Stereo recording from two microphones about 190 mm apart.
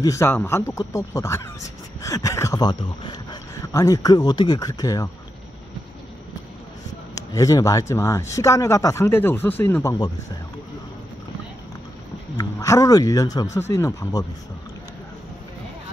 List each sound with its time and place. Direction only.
0.0 s a man's voice: 15° left (ahead or behind)
7.2 s a man's voice: 20° left (ahead or behind)
12.4 s a man's voice: 15° left (ahead or behind)